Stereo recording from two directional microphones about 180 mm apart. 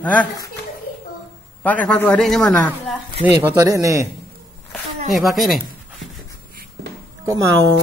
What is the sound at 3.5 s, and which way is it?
Speech, 20° right (ahead or behind).